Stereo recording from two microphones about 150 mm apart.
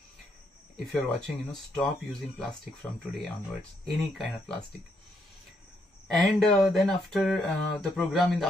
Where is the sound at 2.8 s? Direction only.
10° left (ahead or behind).